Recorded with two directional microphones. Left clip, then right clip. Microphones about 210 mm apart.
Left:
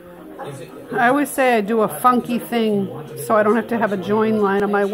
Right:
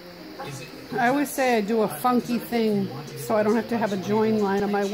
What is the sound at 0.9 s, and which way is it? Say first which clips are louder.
Speech: left 6 dB; 20° left (ahead or behind).